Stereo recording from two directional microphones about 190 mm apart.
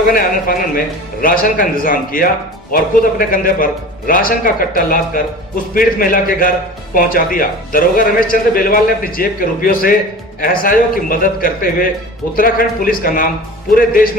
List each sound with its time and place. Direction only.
0.1 s a man's voice: 50° left (ahead or behind)